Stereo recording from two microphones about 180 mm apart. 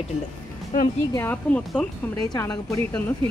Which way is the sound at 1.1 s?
10° left (ahead or behind).